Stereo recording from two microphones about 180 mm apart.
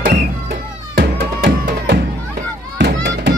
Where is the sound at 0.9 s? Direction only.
65° right (ahead or behind).